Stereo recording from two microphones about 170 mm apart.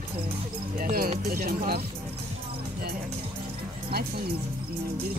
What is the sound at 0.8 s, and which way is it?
Speech, 60° right (ahead or behind).